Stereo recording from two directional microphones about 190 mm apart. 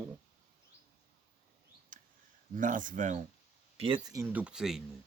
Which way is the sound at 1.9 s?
45° right (ahead or behind).